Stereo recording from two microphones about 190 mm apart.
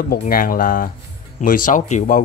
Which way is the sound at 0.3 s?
50° left (ahead or behind).